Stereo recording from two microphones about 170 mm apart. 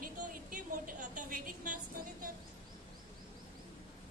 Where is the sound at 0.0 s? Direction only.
55° right (ahead or behind).